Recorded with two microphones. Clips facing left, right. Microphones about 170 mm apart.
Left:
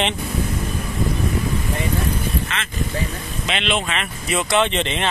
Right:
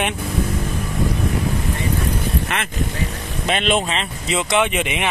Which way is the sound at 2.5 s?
60° right (ahead or behind).